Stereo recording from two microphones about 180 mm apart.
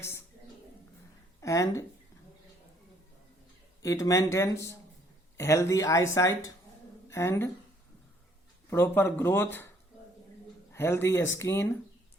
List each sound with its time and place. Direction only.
1.4 s speech: 15° left (ahead or behind)
3.8 s speech: 20° left (ahead or behind)
8.7 s speech: 10° left (ahead or behind)
10.7 s speech: 15° left (ahead or behind)